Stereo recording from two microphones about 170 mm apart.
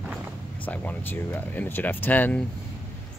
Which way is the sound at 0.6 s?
10° left (ahead or behind).